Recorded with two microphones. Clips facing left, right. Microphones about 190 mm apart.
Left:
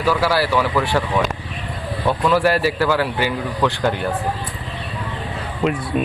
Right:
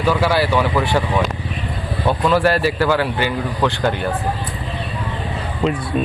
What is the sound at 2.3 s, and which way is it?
Speech, 10° left (ahead or behind).